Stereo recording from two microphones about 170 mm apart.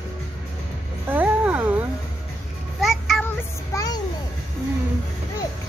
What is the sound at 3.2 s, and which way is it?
Child singing, 20° left (ahead or behind).